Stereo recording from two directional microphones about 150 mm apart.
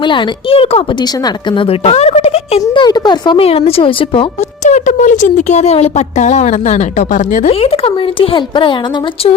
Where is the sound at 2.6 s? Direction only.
30° left (ahead or behind).